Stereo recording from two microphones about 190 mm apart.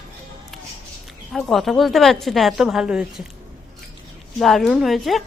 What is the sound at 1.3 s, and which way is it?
A woman's voice, centre (ahead or behind).